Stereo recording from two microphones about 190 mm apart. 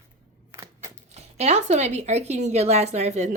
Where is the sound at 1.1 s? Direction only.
35° right (ahead or behind).